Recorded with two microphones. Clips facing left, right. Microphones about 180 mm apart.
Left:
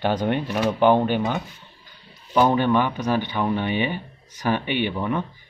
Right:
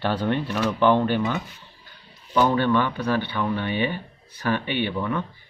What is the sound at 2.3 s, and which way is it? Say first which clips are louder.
Speech: left 2 dB; 15° left (ahead or behind).